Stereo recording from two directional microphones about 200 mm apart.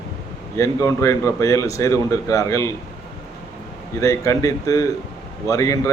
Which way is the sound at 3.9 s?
15° left (ahead or behind).